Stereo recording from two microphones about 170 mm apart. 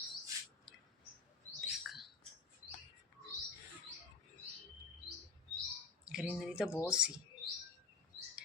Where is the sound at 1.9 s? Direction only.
Centre (ahead or behind).